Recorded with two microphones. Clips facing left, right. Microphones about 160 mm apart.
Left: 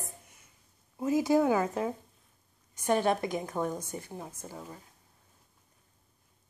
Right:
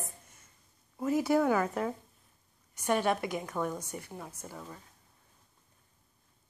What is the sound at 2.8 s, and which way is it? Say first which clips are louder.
A woman's voice: left 2 dB; 35° left (ahead or behind).